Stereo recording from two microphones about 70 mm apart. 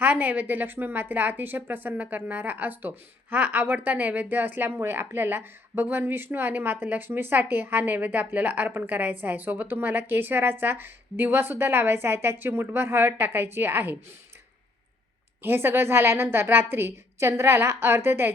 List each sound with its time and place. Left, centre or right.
0.0 s a woman's voice: right
15.4 s a woman's voice: right